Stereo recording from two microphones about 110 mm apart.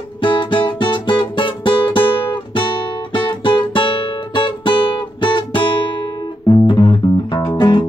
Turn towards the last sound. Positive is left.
turn(degrees=45)  # may be behind; listen again after turning